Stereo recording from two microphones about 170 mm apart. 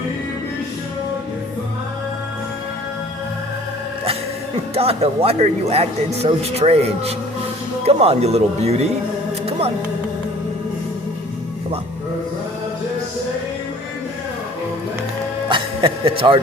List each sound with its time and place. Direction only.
4.7 s speech: 35° right (ahead or behind)
9.5 s a sound: 35° right (ahead or behind)
15.4 s music: 30° right (ahead or behind)